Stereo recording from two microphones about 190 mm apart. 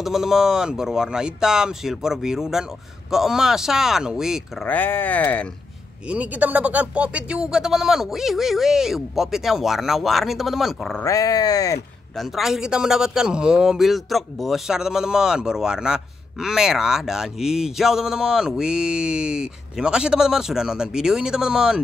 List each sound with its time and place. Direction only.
0.0 s a man's voice: centre (ahead or behind)
6.0 s a man's voice: 5° right (ahead or behind)
11.1 s a sound: 20° left (ahead or behind)
12.2 s a man's voice: centre (ahead or behind)